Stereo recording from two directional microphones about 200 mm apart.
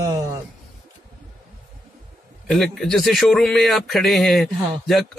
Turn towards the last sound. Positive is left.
turn(degrees=0)  # may be behind; listen again after turning